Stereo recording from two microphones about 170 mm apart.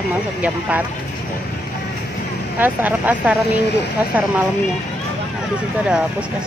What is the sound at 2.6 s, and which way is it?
Speech, 10° right (ahead or behind).